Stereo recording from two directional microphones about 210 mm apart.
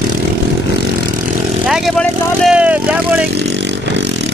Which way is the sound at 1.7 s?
Centre (ahead or behind).